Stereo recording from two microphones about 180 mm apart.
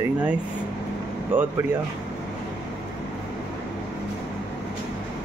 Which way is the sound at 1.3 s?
10° right (ahead or behind).